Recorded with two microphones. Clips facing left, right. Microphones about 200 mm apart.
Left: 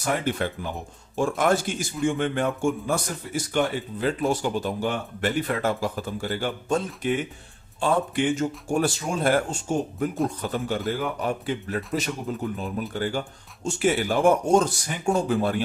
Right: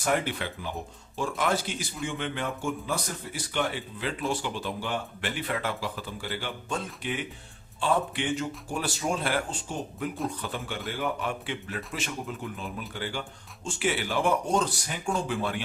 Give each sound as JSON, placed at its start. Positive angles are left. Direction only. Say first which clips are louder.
{"t": 0.2, "sound": "speech", "louder": "left 6 dB", "side_deg": 45}
{"t": 8.4, "sound": "speech", "louder": "left 8 dB", "side_deg": 45}